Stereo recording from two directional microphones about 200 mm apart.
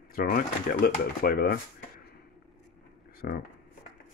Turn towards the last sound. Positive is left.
turn(degrees=45)  # may be behind; listen again after turning